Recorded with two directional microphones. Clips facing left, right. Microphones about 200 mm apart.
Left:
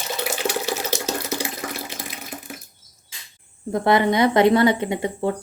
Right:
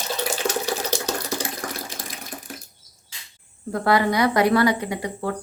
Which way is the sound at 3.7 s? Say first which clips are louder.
Left 2 dB; 20° left (ahead or behind).